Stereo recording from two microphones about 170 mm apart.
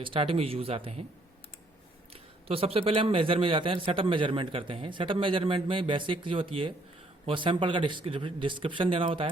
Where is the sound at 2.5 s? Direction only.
35° right (ahead or behind).